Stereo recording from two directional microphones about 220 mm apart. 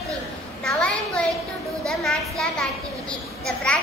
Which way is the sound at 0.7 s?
5° left (ahead or behind).